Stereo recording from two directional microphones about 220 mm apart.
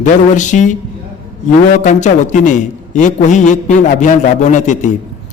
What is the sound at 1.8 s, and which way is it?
A man's voice, 35° left (ahead or behind).